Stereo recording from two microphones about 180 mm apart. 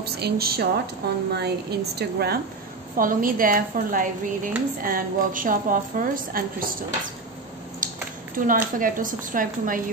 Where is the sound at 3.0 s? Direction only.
50° right (ahead or behind).